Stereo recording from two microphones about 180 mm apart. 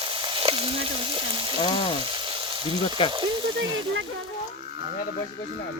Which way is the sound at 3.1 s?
25° right (ahead or behind).